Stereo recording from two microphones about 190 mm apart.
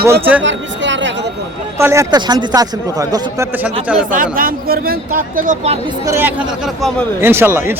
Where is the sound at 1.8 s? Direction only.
15° right (ahead or behind).